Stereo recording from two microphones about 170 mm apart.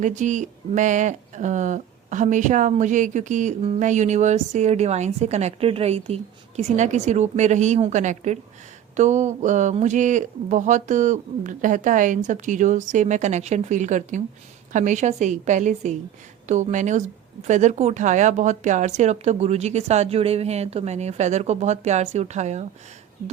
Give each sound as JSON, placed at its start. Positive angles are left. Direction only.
{"t": 0.0, "sound": "a woman's voice", "side_deg": -45}